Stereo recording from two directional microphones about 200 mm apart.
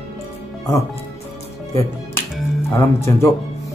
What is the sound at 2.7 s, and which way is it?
Speech, 15° left (ahead or behind).